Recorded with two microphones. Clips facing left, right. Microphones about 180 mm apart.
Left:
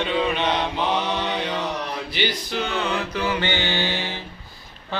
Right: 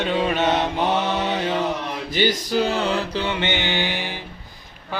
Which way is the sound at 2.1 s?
45° right (ahead or behind).